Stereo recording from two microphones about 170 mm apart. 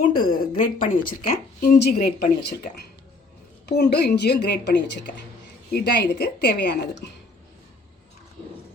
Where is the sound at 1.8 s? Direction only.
70° left (ahead or behind); by 5.1 s 90° left.